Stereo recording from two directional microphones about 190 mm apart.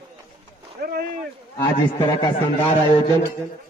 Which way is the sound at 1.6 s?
25° left (ahead or behind).